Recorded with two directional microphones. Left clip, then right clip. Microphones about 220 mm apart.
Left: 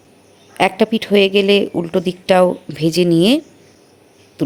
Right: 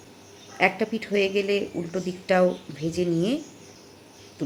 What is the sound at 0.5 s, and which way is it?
Speech, 35° left (ahead or behind).